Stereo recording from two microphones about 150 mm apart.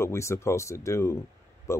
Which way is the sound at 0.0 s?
20° left (ahead or behind).